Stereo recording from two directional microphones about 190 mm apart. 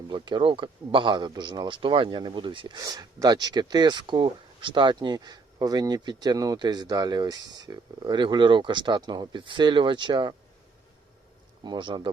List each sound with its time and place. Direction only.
0.1 s a man's voice: 25° right (ahead or behind)
11.6 s a man's voice: 25° right (ahead or behind)